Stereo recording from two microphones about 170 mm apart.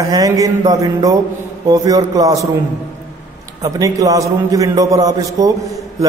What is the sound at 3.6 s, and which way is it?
A man's voice, 20° right (ahead or behind).